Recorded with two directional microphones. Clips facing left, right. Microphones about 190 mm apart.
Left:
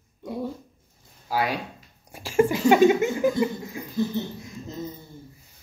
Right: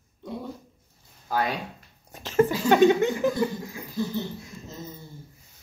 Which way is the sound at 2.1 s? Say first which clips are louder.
Left 1 dB; 10° left (ahead or behind).